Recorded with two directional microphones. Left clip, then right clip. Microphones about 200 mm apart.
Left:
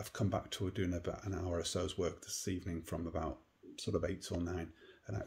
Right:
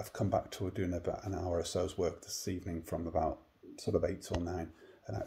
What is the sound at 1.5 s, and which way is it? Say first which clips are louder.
Speech: right 4 dB; 25° left (ahead or behind).